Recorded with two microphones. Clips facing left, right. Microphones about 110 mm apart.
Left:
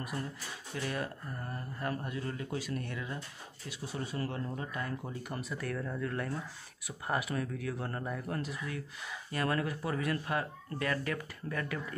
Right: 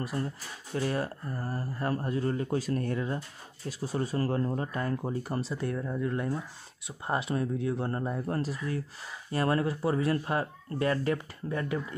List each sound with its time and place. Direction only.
0.0 s speech: 35° right (ahead or behind)